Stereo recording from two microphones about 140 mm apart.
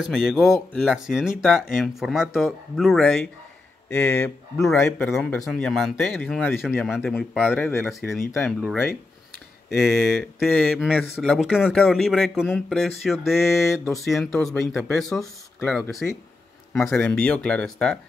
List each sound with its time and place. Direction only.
0.0 s speech: centre (ahead or behind)
3.9 s speech: 15° left (ahead or behind)
7.8 s speech: 15° left (ahead or behind)
8.1 s speech: centre (ahead or behind)